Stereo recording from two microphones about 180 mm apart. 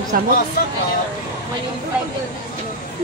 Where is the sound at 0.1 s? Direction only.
55° right (ahead or behind).